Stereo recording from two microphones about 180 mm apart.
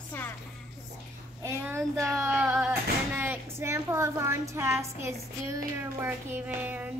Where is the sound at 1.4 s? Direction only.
15° right (ahead or behind).